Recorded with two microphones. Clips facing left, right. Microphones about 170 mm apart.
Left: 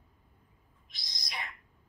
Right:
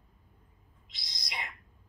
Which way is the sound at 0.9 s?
20° right (ahead or behind).